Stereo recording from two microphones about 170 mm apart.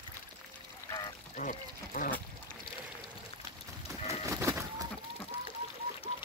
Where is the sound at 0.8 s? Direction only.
25° left (ahead or behind).